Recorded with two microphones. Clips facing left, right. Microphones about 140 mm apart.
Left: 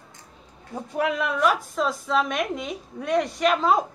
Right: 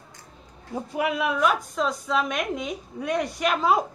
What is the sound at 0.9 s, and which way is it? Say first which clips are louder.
A woman's voice: left 1 dB; 5° right (ahead or behind).